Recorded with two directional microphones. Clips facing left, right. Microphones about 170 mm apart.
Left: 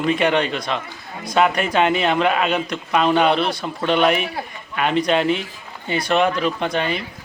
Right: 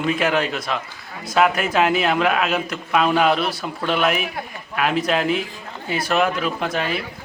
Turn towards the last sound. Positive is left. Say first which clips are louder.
# left 1 dB
turn(degrees=-5)  # may be behind; listen again after turning